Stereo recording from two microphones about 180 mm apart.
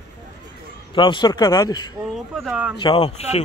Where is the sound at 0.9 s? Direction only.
25° left (ahead or behind).